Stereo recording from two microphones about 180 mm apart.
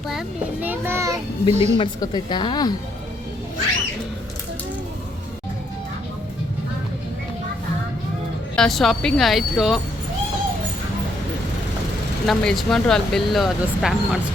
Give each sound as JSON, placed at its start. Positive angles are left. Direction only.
{"t": 0.1, "sound": "a child's voice", "side_deg": -5}
{"t": 1.8, "sound": "speech", "side_deg": 25}
{"t": 8.5, "sound": "speech", "side_deg": 0}
{"t": 12.2, "sound": "speech", "side_deg": 0}